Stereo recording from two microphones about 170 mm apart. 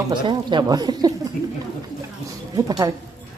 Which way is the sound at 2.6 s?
20° right (ahead or behind).